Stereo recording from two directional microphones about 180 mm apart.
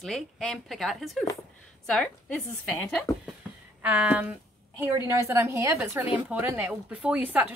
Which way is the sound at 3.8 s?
10° right (ahead or behind).